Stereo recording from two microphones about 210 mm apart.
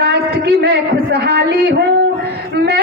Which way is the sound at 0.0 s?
50° right (ahead or behind).